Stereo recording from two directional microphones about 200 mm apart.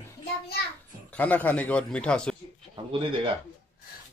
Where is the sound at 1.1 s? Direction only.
10° left (ahead or behind).